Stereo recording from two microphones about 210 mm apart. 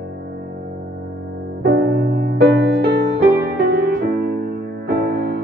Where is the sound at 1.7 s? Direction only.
50° right (ahead or behind).